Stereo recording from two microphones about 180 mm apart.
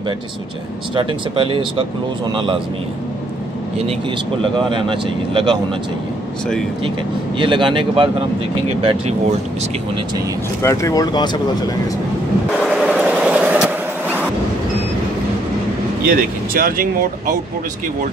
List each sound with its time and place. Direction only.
0.9 s speech: 30° right (ahead or behind)
4.4 s speech: 30° right (ahead or behind)
7.3 s speech: 25° right (ahead or behind)
10.6 s speech: 15° left (ahead or behind)
12.5 s vehicle: centre (ahead or behind)
16.1 s speech: 55° right (ahead or behind)